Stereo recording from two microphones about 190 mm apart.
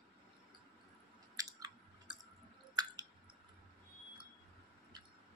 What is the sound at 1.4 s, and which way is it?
Chewing, 20° right (ahead or behind).